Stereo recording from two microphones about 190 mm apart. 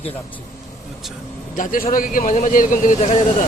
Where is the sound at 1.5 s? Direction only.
45° left (ahead or behind).